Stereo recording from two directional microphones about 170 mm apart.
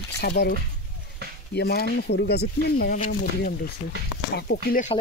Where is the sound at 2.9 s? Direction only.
55° left (ahead or behind).